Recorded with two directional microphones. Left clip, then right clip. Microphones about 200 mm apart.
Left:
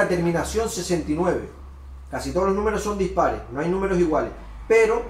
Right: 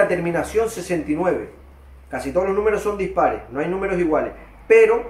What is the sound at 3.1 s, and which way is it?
Speech, centre (ahead or behind).